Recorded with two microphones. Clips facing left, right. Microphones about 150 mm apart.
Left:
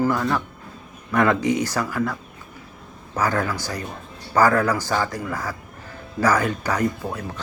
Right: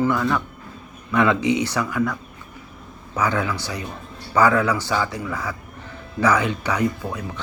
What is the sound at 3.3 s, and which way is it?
Speech, 45° left (ahead or behind).